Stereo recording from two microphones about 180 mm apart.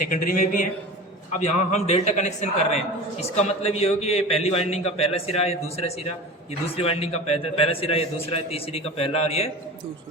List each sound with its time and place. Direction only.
0.1 s a man's voice: 50° left (ahead or behind)
1.4 s a man's voice: 35° left (ahead or behind)